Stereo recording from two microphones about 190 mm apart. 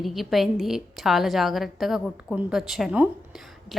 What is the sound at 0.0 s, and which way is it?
A woman's voice, centre (ahead or behind).